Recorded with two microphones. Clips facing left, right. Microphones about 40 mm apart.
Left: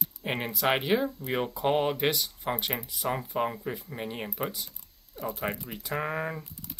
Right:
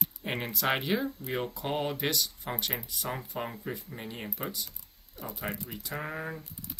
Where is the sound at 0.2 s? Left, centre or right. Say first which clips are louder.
Left 3 dB; centre.